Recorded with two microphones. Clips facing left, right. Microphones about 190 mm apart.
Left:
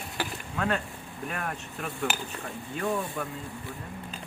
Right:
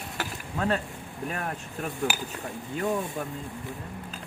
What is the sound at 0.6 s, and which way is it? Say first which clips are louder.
Speech: right 2 dB; 30° right (ahead or behind).